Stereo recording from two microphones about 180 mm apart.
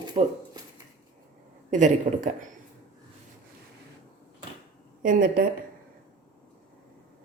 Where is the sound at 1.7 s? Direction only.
45° right (ahead or behind).